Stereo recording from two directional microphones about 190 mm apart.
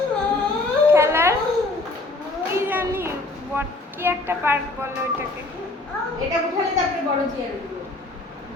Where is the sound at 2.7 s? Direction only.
10° right (ahead or behind).